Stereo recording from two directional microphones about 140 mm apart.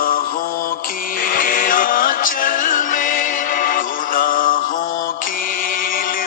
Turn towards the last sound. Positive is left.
turn(degrees=85)